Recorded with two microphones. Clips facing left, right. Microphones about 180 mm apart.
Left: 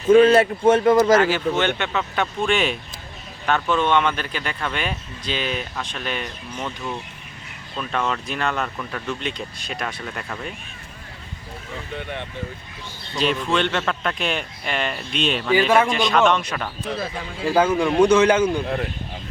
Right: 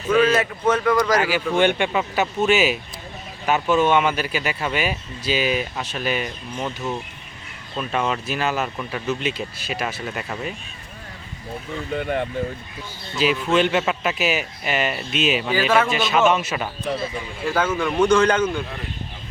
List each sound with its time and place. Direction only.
0.1 s a man's voice: 30° left (ahead or behind)
1.2 s speech: 10° right (ahead or behind)
2.5 s a man's voice: 5° right (ahead or behind)
7.8 s speech: 10° right (ahead or behind)
11.9 s speech: 45° right (ahead or behind)
13.1 s a man's voice: 5° right (ahead or behind)
17.4 s speech: 15° left (ahead or behind)